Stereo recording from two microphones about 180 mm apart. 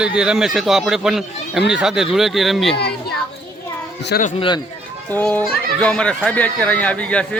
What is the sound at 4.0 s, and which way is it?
Speech, 70° left (ahead or behind).